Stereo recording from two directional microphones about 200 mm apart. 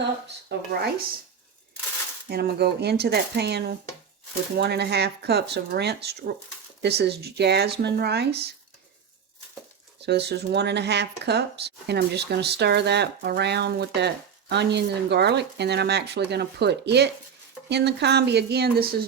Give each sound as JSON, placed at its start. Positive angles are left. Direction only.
{"t": 0.4, "sound": "speech", "side_deg": -55}
{"t": 2.3, "sound": "speech", "side_deg": -50}
{"t": 10.0, "sound": "speech", "side_deg": -55}